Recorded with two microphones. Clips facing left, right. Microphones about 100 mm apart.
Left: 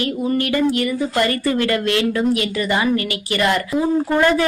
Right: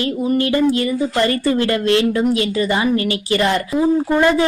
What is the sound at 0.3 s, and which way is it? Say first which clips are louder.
A woman's voice: right 3 dB; 30° right (ahead or behind).